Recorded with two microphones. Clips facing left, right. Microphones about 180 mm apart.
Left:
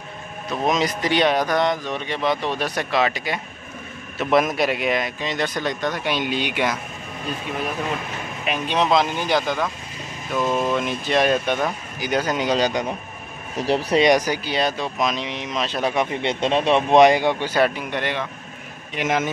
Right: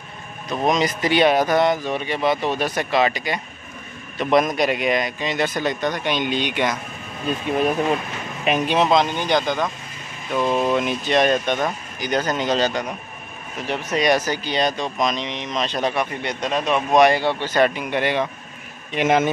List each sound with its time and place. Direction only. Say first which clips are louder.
0.5 s speech: right 1 dB; centre (ahead or behind)
8.6 s speech: even; 5° right (ahead or behind); by 12.8 s 10° left (ahead or behind)
13.6 s speech: left 5 dB; 35° left (ahead or behind)
14.0 s speech: left 2 dB; 15° left (ahead or behind)
15.9 s speech: left 2 dB; 25° left (ahead or behind)
17.6 s speech: right 3 dB; centre (ahead or behind)
18.9 s a man's voice: right 5 dB; 25° right (ahead or behind)